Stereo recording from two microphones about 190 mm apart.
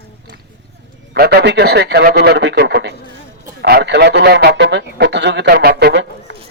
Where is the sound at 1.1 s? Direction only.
60° right (ahead or behind).